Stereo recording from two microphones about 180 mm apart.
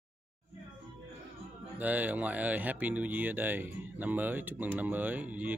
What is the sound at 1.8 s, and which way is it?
Speech, 10° right (ahead or behind).